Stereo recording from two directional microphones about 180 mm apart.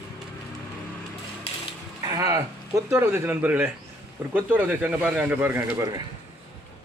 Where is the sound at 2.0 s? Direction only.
20° right (ahead or behind).